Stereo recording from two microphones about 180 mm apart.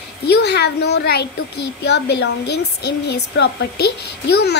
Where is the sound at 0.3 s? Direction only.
65° left (ahead or behind).